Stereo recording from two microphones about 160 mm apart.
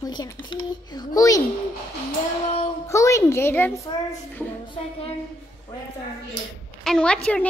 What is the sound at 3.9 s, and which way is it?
Speech, 25° left (ahead or behind).